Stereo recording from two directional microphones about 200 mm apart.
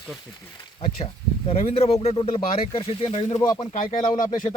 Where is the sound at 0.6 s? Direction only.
25° left (ahead or behind).